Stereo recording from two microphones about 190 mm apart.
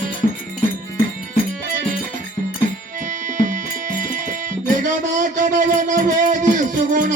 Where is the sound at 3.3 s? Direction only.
45° right (ahead or behind).